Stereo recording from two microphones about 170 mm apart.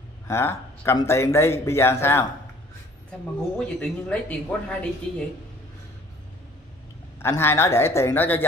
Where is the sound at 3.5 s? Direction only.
5° left (ahead or behind).